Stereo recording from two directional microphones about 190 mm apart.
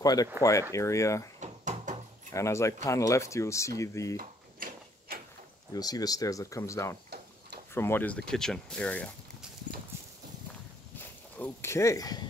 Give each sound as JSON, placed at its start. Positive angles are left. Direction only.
{"t": 0.0, "sound": "speech", "side_deg": 20}
{"t": 1.4, "sound": "door", "side_deg": -40}
{"t": 2.3, "sound": "speech", "side_deg": 15}
{"t": 4.2, "sound": "drawer open or close", "side_deg": -50}
{"t": 5.7, "sound": "speech", "side_deg": 20}
{"t": 11.3, "sound": "speech", "side_deg": 10}